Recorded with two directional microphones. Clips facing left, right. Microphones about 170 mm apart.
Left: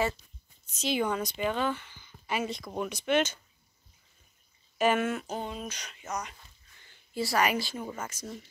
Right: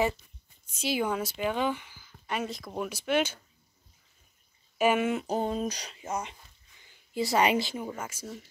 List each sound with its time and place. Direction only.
0.7 s speech: 10° right (ahead or behind)
4.7 s speech: 10° right (ahead or behind)
5.2 s speech: 40° right (ahead or behind)
6.8 s speech: 15° right (ahead or behind)
7.8 s speech: 10° right (ahead or behind)